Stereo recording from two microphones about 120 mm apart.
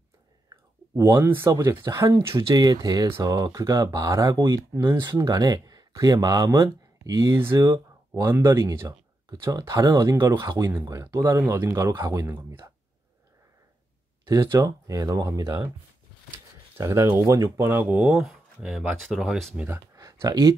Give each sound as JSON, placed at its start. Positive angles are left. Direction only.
{"t": 0.5, "sound": "speech", "side_deg": -25}
{"t": 2.3, "sound": "a man's voice", "side_deg": -35}
{"t": 14.2, "sound": "a man's voice", "side_deg": -25}
{"t": 16.7, "sound": "a man's voice", "side_deg": -25}
{"t": 18.0, "sound": "speech", "side_deg": -5}
{"t": 20.0, "sound": "a sound", "side_deg": -30}